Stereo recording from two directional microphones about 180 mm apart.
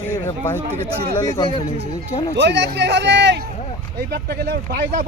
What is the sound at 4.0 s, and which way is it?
Speech, 60° right (ahead or behind).